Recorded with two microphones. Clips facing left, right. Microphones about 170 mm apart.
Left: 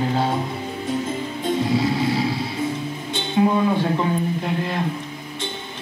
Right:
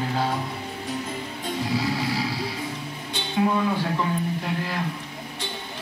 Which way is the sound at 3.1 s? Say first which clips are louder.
Left 4 dB; 25° left (ahead or behind).